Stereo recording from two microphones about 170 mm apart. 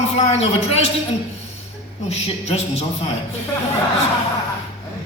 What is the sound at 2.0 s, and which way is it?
Speech, 40° left (ahead or behind).